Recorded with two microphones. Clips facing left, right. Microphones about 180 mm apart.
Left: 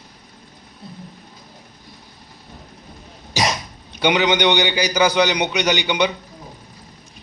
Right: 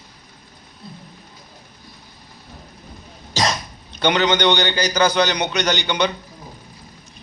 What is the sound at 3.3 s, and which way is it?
A man's voice, 15° left (ahead or behind).